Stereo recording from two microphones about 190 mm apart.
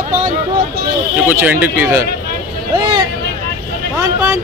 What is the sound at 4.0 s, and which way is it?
Speech, 15° right (ahead or behind).